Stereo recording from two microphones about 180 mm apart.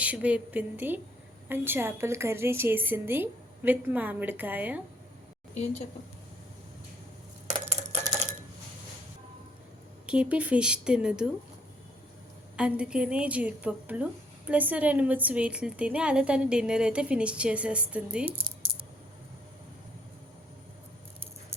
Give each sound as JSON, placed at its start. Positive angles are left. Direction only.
{"t": 0.0, "sound": "a woman's voice", "side_deg": -10}
{"t": 7.7, "sound": "a sound", "side_deg": -40}
{"t": 10.1, "sound": "speech", "side_deg": -5}
{"t": 12.5, "sound": "a woman's voice", "side_deg": -5}